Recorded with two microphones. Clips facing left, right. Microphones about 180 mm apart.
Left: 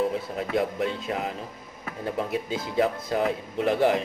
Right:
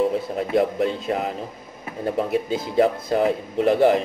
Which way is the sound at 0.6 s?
40° right (ahead or behind).